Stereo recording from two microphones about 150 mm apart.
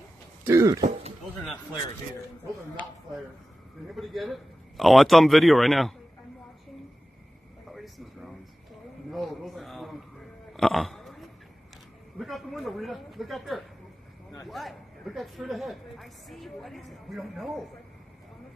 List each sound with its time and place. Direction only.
0.4 s throat clearing: 20° right (ahead or behind)
3.8 s a man's voice: centre (ahead or behind)
7.7 s a sound: centre (ahead or behind)
14.5 s a woman's voice: centre (ahead or behind)